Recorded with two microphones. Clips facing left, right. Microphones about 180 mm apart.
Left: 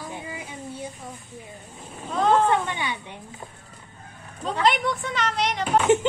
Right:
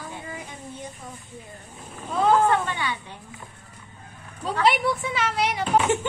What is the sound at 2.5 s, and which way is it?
Speech, 15° left (ahead or behind).